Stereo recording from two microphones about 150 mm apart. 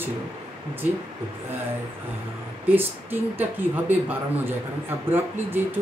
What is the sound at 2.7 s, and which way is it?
Speech, 15° right (ahead or behind).